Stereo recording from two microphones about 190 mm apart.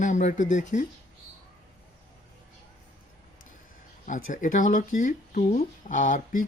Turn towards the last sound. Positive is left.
turn(degrees=45)  # may be behind; listen again after turning